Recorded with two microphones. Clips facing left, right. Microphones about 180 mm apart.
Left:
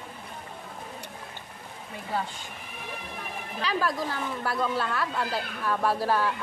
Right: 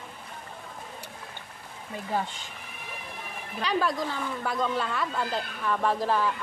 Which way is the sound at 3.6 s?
5° left (ahead or behind).